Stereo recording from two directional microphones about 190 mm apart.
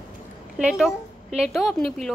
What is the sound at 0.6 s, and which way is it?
A woman's voice, 5° right (ahead or behind).